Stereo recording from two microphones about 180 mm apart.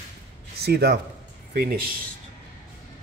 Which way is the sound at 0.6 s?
65° right (ahead or behind).